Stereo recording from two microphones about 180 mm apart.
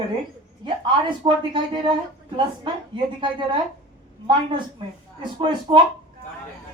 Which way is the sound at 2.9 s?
25° right (ahead or behind).